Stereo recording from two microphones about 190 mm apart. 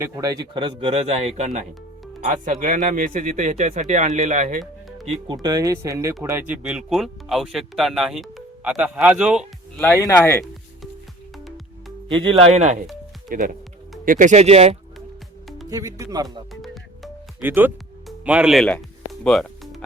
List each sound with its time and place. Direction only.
0.0 s speech: 20° right (ahead or behind); by 4.6 s 40° right (ahead or behind)
4.6 s music: centre (ahead or behind)
5.0 s speech: 25° right (ahead or behind); by 9.4 s 5° right (ahead or behind)
9.7 s speech: 10° left (ahead or behind)
12.0 s speech: 25° right (ahead or behind)
15.7 s speech: 20° right (ahead or behind)
17.4 s speech: 10° right (ahead or behind)
19.2 s music: 5° left (ahead or behind)